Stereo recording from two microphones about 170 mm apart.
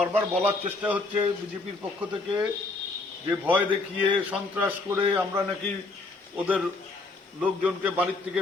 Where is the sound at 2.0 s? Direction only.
5° right (ahead or behind).